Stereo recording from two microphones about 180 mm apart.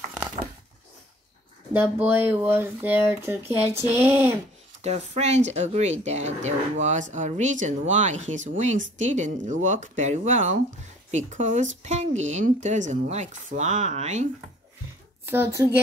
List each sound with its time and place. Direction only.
1.7 s speech: 10° right (ahead or behind)
4.8 s speech: 35° right (ahead or behind)
15.2 s speech: 10° right (ahead or behind)